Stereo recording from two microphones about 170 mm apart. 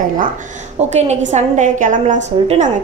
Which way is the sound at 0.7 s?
40° right (ahead or behind).